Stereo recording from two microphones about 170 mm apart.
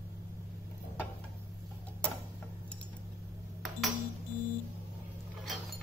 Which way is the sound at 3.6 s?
Centre (ahead or behind).